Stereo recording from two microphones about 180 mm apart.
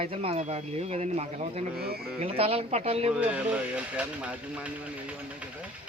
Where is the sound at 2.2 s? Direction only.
35° right (ahead or behind).